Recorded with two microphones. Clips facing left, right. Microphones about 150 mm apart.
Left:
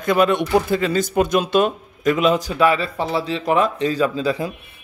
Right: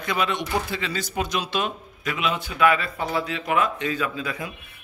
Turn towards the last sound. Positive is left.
turn(degrees=30)  # may be behind; listen again after turning